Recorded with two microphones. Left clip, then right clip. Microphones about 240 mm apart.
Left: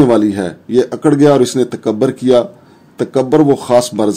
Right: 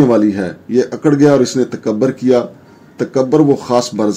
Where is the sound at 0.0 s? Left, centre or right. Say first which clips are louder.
Left 1 dB; left.